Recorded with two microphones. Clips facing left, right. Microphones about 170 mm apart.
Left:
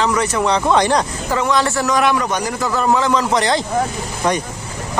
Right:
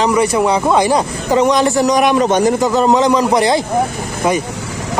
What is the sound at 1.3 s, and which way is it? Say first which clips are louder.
Speech: right 6 dB; 20° right (ahead or behind).